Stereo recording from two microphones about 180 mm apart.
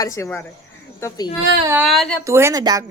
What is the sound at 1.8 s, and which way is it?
Speech, centre (ahead or behind).